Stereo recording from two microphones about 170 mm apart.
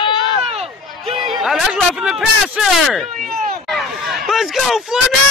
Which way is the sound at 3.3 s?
55° right (ahead or behind).